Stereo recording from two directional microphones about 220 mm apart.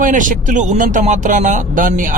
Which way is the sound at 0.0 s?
35° right (ahead or behind).